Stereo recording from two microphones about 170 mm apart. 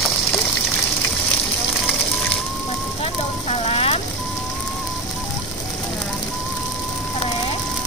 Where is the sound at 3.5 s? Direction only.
35° left (ahead or behind).